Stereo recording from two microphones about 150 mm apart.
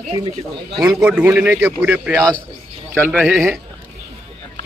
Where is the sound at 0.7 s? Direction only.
5° right (ahead or behind).